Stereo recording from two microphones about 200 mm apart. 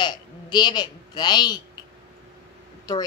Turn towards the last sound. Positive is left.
turn(degrees=20)  # may be behind; listen again after turning